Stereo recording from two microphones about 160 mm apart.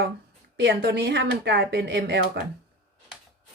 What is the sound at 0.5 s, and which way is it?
Speech, 90° right.